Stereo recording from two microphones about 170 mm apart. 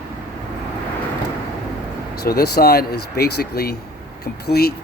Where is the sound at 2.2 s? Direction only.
70° left (ahead or behind).